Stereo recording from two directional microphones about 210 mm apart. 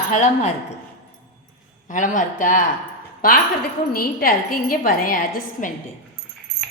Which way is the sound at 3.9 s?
45° left (ahead or behind).